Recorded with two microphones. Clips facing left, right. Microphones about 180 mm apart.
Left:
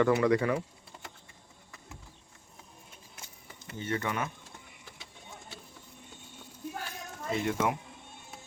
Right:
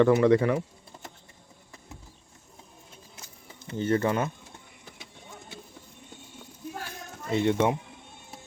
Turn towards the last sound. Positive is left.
turn(degrees=-25)  # may be behind; listen again after turning